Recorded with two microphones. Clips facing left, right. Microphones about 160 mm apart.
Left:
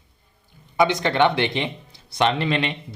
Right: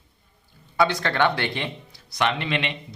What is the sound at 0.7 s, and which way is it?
Speech, 20° left (ahead or behind).